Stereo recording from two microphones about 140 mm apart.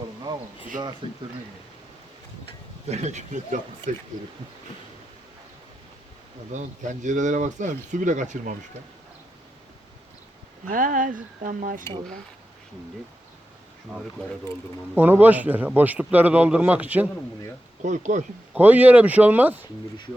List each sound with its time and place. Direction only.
0.3 s a sound: 30° right (ahead or behind)
1.0 s speech: 35° right (ahead or behind)
2.9 s speech: 55° right (ahead or behind)
6.5 s speech: 60° right (ahead or behind)
10.7 s speech: 75° right (ahead or behind)
14.9 s a man's voice: 15° right (ahead or behind)
17.8 s speech: 60° right (ahead or behind)
18.5 s a man's voice: 10° right (ahead or behind)